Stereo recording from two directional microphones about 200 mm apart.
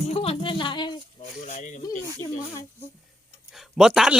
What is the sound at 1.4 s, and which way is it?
Speech, 35° left (ahead or behind).